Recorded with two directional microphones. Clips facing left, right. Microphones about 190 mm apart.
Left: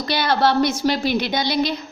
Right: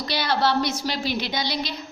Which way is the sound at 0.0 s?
55° left (ahead or behind).